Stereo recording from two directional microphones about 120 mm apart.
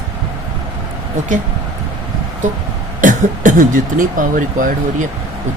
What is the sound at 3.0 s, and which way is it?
Speech, 90° right.